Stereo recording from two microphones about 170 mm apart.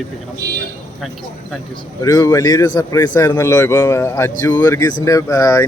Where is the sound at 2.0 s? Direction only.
20° left (ahead or behind).